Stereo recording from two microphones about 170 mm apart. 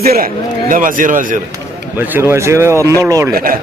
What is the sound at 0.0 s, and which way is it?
A man's voice, 60° right (ahead or behind).